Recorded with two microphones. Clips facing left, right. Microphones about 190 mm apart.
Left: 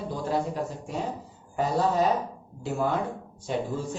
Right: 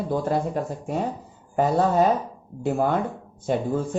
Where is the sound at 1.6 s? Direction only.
55° right (ahead or behind).